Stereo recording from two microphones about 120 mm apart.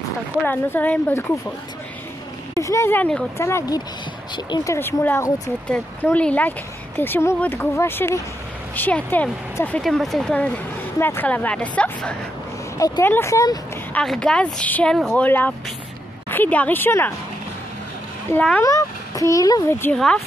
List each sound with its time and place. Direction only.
0.4 s speech: 15° left (ahead or behind)
2.5 s speech: 25° left (ahead or behind); by 12.2 s 10° left (ahead or behind)
12.7 s speech: 30° left (ahead or behind)
13.9 s speech: 5° left (ahead or behind)
18.6 s a child's voice: 30° left (ahead or behind)
19.7 s speech: 20° left (ahead or behind)